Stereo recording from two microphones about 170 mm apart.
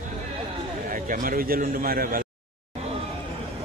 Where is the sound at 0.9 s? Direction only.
55° right (ahead or behind).